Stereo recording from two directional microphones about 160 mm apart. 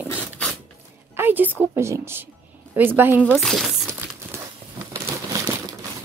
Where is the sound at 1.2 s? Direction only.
10° right (ahead or behind).